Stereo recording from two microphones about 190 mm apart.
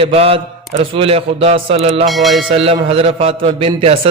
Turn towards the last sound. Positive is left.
turn(degrees=-30)  # may be behind; listen again after turning